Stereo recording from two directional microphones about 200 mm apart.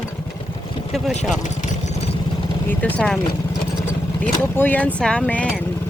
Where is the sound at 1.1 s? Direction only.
40° left (ahead or behind).